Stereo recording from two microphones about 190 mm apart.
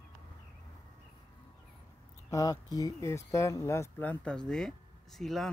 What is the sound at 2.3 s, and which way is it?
Speech, 20° left (ahead or behind).